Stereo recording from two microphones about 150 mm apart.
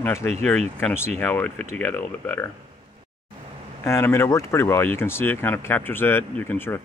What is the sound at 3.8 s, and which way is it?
Speech, 20° left (ahead or behind).